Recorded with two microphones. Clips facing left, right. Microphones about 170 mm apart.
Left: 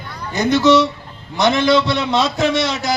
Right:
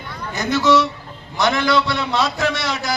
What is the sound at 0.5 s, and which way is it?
A man's voice, 20° left (ahead or behind).